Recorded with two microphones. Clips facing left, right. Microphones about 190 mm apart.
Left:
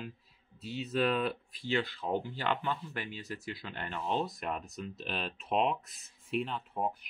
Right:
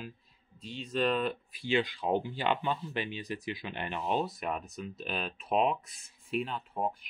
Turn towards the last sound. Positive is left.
turn(degrees=0)  # may be behind; listen again after turning